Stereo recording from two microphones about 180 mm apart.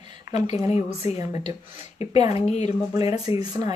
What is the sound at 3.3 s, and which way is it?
Speech, 15° right (ahead or behind).